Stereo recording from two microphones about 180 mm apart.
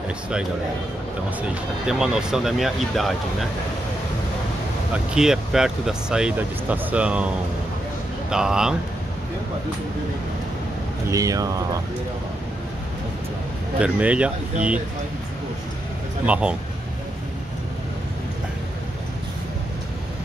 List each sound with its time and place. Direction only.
1.5 s speech: 5° right (ahead or behind)
4.9 s speech: 5° right (ahead or behind)
8.3 s speech: 5° right (ahead or behind)
11.1 s speech: 20° right (ahead or behind)
13.7 s a man's voice: 5° right (ahead or behind)
16.3 s a man's voice: 5° right (ahead or behind)